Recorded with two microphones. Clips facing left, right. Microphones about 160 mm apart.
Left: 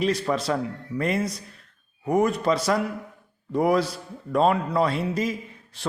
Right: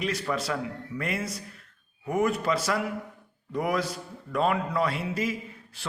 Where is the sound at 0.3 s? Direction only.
35° left (ahead or behind).